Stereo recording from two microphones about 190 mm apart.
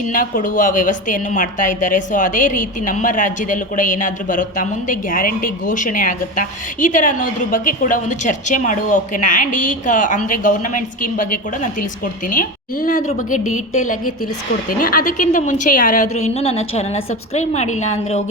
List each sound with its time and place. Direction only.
0.1 s a woman's voice: 45° left (ahead or behind)